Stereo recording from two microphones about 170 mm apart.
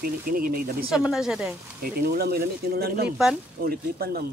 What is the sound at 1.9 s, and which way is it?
Speech, 65° right (ahead or behind).